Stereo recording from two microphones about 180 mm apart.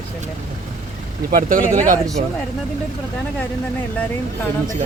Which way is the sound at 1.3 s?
50° right (ahead or behind).